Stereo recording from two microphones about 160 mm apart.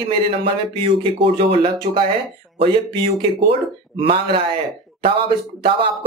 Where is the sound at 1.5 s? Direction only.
35° right (ahead or behind).